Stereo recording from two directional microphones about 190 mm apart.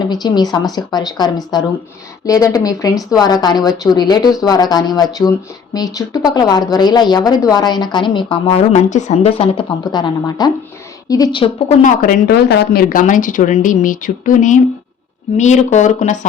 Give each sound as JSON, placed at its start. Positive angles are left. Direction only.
{"t": 0.0, "sound": "speech", "side_deg": 20}
{"t": 11.8, "sound": "speech", "side_deg": 55}